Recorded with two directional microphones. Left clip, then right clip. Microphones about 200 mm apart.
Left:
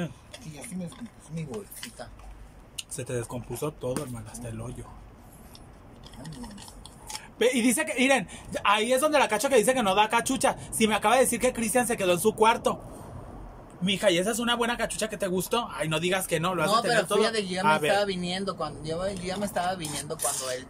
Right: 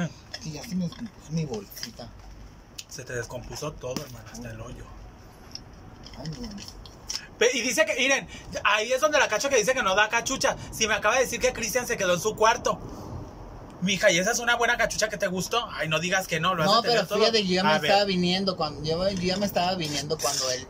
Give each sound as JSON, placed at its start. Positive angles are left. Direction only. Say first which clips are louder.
{"t": 3.0, "sound": "speech", "louder": "even", "side_deg": 20}
{"t": 7.1, "sound": "speech", "louder": "right 2 dB", "side_deg": 25}
{"t": 13.8, "sound": "speech", "louder": "right 2 dB", "side_deg": 20}
{"t": 16.7, "sound": "speech", "louder": "right 1 dB", "side_deg": -10}